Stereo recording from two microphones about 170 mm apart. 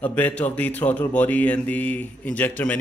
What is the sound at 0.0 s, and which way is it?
Speech, 10° left (ahead or behind).